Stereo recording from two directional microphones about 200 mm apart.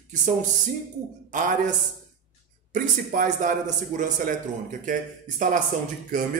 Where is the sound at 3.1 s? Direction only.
40° right (ahead or behind).